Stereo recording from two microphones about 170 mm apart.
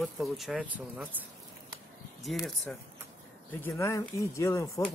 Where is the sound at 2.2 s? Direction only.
Centre (ahead or behind).